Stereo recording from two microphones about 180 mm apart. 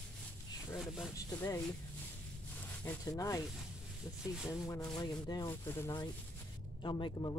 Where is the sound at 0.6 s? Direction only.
15° left (ahead or behind).